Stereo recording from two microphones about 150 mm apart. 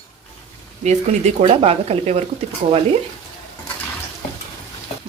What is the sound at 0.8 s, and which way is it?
Speech, 50° right (ahead or behind).